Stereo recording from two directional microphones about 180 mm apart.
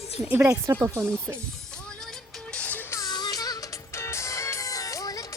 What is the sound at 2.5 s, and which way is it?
Music, 10° left (ahead or behind).